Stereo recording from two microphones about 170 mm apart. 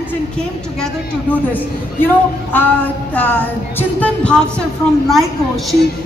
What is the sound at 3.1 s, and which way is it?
Speech, 10° left (ahead or behind).